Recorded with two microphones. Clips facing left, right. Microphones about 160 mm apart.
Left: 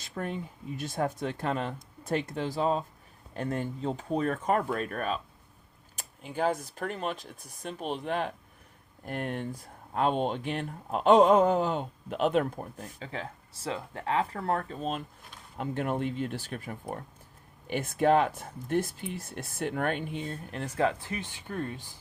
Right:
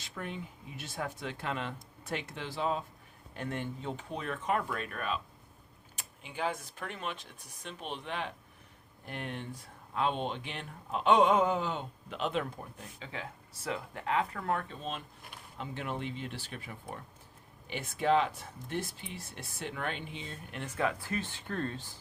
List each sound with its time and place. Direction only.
0.0 s speech: 40° left (ahead or behind)
12.5 s speech: 40° left (ahead or behind)
21.0 s speech: 15° left (ahead or behind)